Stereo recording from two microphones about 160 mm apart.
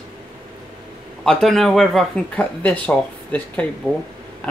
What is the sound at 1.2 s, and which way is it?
Speech, centre (ahead or behind).